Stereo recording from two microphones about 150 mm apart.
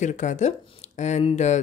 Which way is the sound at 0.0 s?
55° left (ahead or behind).